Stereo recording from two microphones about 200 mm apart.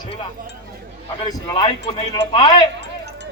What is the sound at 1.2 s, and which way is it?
Speech, 20° left (ahead or behind).